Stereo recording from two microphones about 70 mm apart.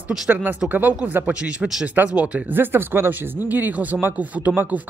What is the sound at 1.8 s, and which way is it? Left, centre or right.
Speech, right.